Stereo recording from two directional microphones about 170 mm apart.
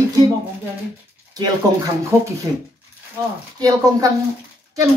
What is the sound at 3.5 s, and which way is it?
Speech, 20° right (ahead or behind).